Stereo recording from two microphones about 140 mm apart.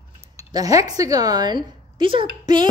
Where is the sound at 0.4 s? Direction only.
25° right (ahead or behind).